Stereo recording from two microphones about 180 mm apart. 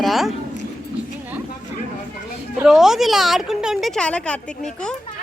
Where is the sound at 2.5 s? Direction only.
Centre (ahead or behind).